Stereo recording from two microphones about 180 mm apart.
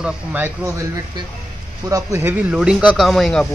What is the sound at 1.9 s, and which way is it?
Speech, 20° right (ahead or behind).